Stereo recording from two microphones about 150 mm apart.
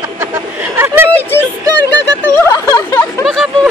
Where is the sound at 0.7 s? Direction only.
15° right (ahead or behind).